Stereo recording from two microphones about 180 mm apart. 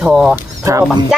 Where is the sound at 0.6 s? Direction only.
15° right (ahead or behind).